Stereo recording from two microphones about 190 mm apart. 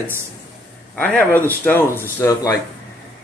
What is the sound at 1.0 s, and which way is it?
Speech, 10° left (ahead or behind).